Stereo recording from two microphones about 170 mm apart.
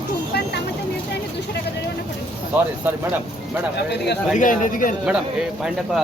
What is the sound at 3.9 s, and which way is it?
Speech, 85° left.